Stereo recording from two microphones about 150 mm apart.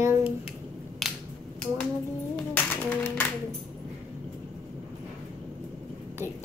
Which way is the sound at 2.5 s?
10° left (ahead or behind).